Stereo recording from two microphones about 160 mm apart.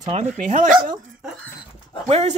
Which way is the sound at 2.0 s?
40° right (ahead or behind).